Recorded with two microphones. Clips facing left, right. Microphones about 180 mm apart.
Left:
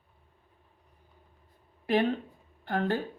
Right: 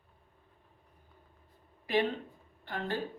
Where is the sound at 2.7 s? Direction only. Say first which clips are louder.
Left 8 dB; 55° left (ahead or behind).